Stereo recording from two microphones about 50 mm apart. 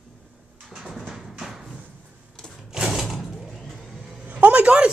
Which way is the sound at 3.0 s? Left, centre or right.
Centre.